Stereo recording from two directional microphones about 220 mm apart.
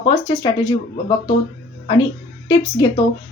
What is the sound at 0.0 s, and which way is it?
Speech, 15° left (ahead or behind).